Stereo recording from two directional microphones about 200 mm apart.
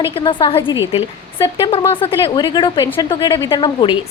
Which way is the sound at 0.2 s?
25° left (ahead or behind).